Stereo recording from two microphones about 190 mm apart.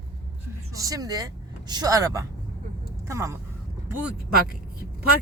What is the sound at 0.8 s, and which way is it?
Speech, 20° right (ahead or behind).